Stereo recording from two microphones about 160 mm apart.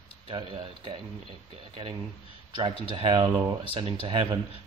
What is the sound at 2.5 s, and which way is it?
Speech, 30° right (ahead or behind).